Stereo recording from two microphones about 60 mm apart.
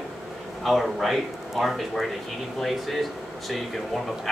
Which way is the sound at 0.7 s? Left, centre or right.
Centre.